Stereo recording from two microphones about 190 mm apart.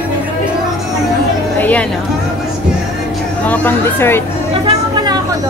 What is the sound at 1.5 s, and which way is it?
Chatter, 10° left (ahead or behind).